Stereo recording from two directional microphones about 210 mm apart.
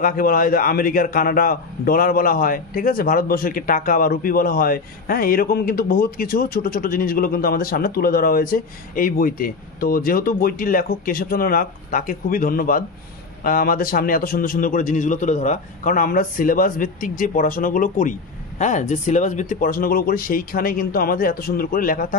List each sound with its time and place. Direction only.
0.0 s a man's voice: 40° left (ahead or behind)